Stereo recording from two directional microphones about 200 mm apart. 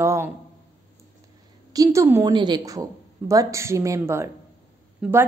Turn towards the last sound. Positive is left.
turn(degrees=-5)  # may be behind; listen again after turning